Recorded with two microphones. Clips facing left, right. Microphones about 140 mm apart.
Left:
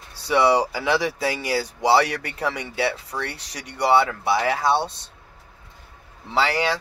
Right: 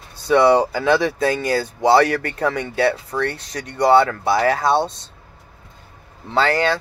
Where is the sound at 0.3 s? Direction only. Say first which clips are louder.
Right 5 dB; 10° left (ahead or behind).